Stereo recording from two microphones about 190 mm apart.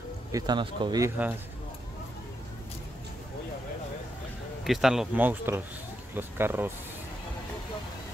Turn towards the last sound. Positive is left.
turn(degrees=-10)  # may be behind; listen again after turning